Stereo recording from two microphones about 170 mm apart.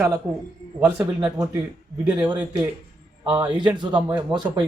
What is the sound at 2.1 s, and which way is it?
A man's voice, 25° right (ahead or behind).